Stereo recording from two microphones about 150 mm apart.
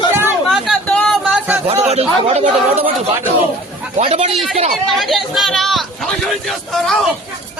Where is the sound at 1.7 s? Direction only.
45° right (ahead or behind).